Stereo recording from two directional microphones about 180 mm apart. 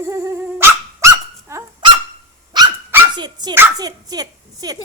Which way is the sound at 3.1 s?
25° right (ahead or behind).